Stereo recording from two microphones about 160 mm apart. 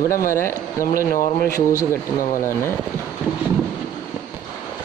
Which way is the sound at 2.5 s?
15° left (ahead or behind).